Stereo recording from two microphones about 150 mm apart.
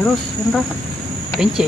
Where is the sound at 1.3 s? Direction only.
5° right (ahead or behind).